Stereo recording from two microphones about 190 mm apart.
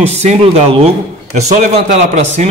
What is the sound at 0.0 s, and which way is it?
A man's voice, 35° right (ahead or behind).